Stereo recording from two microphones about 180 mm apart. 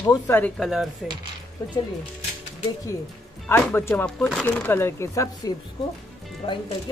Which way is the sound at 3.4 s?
10° left (ahead or behind).